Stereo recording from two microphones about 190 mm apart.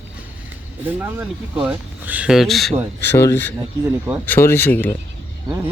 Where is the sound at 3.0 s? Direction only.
15° left (ahead or behind).